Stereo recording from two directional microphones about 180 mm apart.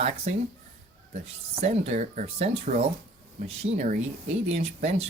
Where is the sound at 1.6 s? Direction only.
40° right (ahead or behind).